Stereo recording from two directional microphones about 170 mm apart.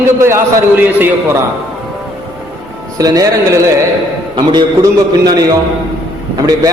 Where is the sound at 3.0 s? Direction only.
20° right (ahead or behind).